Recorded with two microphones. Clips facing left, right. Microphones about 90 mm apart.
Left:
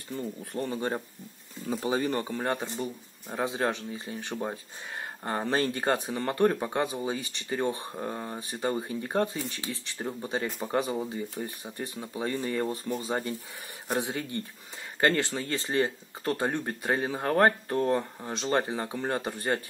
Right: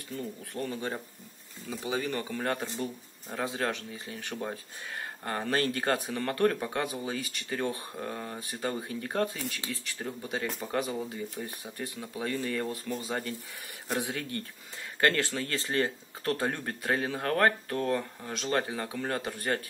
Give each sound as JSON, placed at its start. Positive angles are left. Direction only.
{"t": 0.5, "sound": "speech", "side_deg": 30}
{"t": 2.3, "sound": "speech", "side_deg": 20}